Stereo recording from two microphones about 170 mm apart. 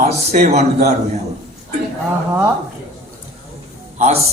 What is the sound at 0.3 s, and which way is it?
Speech, 40° right (ahead or behind).